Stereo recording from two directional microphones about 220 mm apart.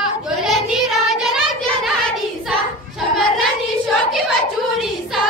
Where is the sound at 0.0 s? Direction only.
Centre (ahead or behind).